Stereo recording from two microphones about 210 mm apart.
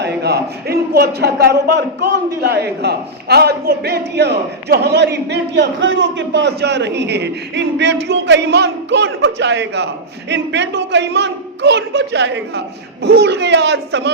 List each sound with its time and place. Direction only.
0.0 s a man's voice: 50° right (ahead or behind)